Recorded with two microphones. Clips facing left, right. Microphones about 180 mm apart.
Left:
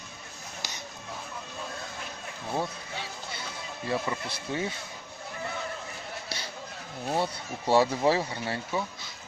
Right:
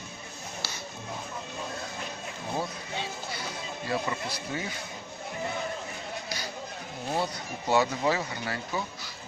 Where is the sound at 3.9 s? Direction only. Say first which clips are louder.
Left 1 dB; 25° left (ahead or behind).